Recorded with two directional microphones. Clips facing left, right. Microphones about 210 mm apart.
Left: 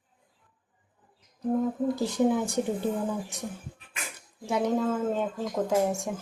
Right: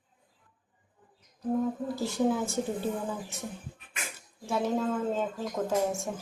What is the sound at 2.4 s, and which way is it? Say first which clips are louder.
Speech: left 3 dB; 15° left (ahead or behind).